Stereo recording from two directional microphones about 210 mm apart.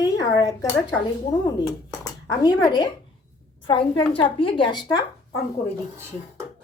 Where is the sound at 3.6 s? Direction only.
25° left (ahead or behind).